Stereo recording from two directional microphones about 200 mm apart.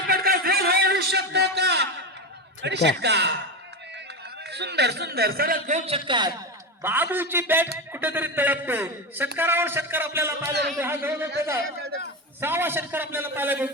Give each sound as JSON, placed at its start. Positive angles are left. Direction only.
{"t": 0.1, "sound": "a sound", "side_deg": -50}
{"t": 2.6, "sound": "speech", "side_deg": -60}
{"t": 4.5, "sound": "a man's voice", "side_deg": -55}
{"t": 6.1, "sound": "a man's voice", "side_deg": -20}
{"t": 6.8, "sound": "a man's voice", "side_deg": -10}
{"t": 12.4, "sound": "a man's voice", "side_deg": -10}